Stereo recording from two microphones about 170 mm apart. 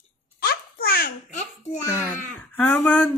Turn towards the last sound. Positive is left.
turn(degrees=10)  # may be behind; listen again after turning